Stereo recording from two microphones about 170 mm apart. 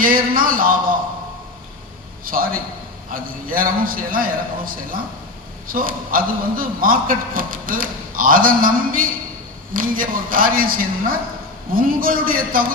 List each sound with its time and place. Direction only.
0.0 s a man's voice: 55° right (ahead or behind)
2.2 s a man's voice: 55° right (ahead or behind)